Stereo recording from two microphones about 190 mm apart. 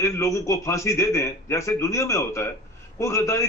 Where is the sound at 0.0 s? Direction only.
15° left (ahead or behind).